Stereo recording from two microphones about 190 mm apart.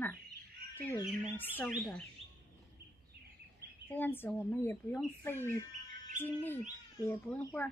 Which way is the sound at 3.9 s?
10° left (ahead or behind).